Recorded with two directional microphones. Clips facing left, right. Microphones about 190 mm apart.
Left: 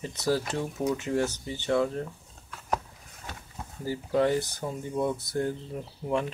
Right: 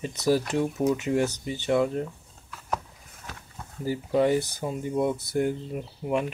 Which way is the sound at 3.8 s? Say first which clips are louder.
Right 2 dB; 15° right (ahead or behind).